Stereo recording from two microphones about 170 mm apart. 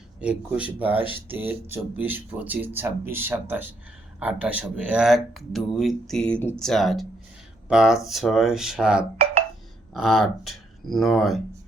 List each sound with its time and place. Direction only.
0.2 s speech: 5° right (ahead or behind)